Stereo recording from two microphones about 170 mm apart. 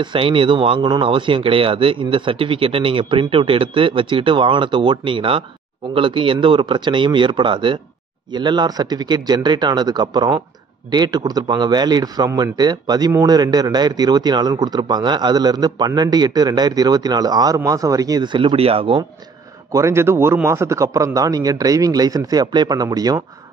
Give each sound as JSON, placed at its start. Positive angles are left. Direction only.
{"t": 0.0, "sound": "a man's voice", "side_deg": -30}
{"t": 19.7, "sound": "a man's voice", "side_deg": -15}